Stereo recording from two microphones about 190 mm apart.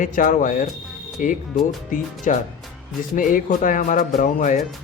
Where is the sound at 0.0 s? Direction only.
45° left (ahead or behind).